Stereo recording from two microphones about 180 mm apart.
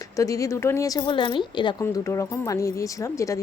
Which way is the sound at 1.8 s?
15° left (ahead or behind).